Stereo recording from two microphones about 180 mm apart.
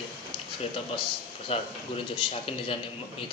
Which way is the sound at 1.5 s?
30° left (ahead or behind).